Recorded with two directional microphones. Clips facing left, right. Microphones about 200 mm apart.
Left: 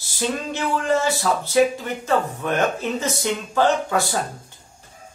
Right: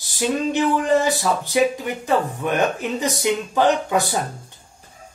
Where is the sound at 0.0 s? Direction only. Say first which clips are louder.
Right 4 dB; 15° right (ahead or behind).